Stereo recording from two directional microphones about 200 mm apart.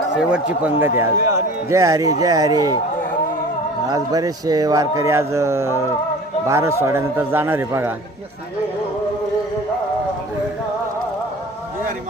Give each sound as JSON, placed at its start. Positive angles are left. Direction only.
{"t": 0.2, "sound": "speech", "side_deg": -5}
{"t": 0.9, "sound": "a man's voice", "side_deg": -15}
{"t": 3.8, "sound": "a man's voice", "side_deg": -20}